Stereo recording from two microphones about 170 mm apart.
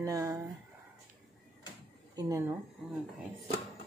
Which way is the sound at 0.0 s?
20° right (ahead or behind).